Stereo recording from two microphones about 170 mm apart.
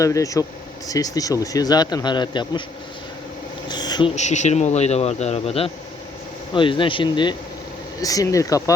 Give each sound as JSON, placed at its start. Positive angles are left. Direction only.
{"t": 0.0, "sound": "speech", "side_deg": 20}
{"t": 3.7, "sound": "insect", "side_deg": 25}
{"t": 4.1, "sound": "speech", "side_deg": 45}